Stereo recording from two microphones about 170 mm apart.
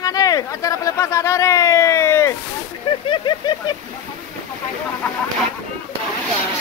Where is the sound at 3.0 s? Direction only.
30° left (ahead or behind).